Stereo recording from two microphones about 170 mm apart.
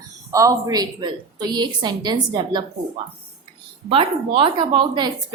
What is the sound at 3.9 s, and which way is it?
A woman's voice, 35° right (ahead or behind).